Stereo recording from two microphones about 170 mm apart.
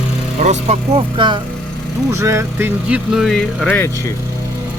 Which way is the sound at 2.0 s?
15° right (ahead or behind).